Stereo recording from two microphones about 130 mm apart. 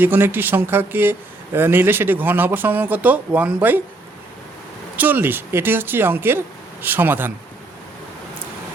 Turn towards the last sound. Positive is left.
turn(degrees=-15)  # may be behind; listen again after turning